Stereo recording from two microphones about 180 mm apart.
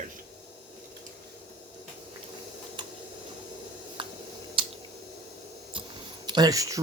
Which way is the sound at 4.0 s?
30° right (ahead or behind).